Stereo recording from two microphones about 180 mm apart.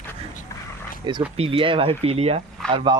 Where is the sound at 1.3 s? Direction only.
30° right (ahead or behind).